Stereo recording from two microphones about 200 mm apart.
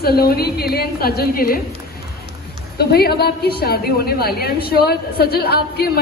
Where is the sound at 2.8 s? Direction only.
50° left (ahead or behind).